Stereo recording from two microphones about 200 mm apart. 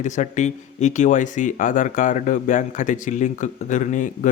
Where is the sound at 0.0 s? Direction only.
35° left (ahead or behind).